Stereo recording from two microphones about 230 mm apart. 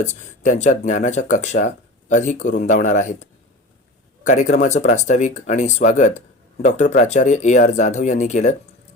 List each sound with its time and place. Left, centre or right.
0.0 s speech: left